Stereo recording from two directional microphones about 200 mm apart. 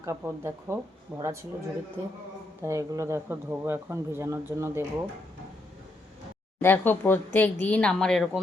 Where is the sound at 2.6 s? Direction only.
15° right (ahead or behind).